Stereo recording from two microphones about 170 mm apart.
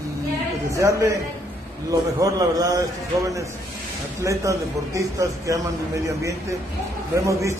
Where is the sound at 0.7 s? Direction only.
20° right (ahead or behind).